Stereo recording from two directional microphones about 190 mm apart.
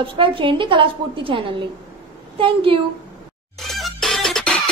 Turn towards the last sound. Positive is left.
turn(degrees=5)  # may be behind; listen again after turning